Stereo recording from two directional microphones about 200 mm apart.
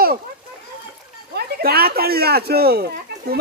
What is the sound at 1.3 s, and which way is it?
Speech, 50° right (ahead or behind).